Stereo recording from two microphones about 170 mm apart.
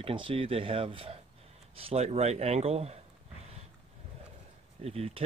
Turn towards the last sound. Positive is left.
turn(degrees=-35)  # may be behind; listen again after turning